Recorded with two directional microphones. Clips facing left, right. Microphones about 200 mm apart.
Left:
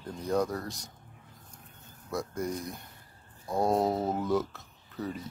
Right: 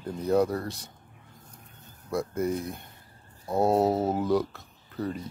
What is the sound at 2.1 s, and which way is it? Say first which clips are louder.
Speech: right 5 dB; 5° right (ahead or behind).